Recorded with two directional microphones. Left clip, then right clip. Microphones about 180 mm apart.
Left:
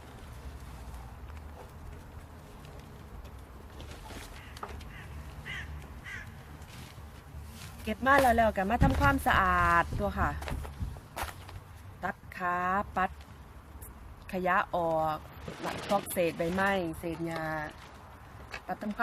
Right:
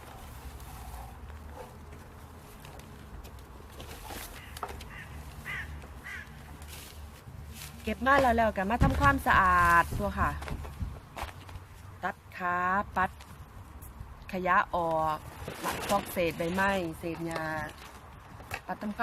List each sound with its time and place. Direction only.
3.8 s boat: 60° right (ahead or behind)
7.9 s speech: 5° left (ahead or behind)
12.0 s speech: 5° left (ahead or behind)
14.3 s speech: 5° left (ahead or behind)
15.4 s speech: 55° right (ahead or behind)
16.1 s speech: 5° left (ahead or behind)
18.5 s a sound: 55° right (ahead or behind)